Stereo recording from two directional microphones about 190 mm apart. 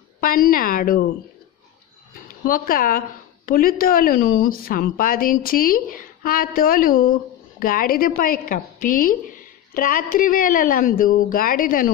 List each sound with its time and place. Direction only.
0.2 s speech: 50° left (ahead or behind)
2.4 s speech: 50° left (ahead or behind)